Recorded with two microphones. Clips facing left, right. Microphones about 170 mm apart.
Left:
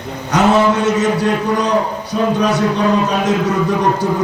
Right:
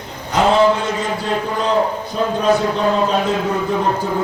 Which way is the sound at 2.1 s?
75° left (ahead or behind).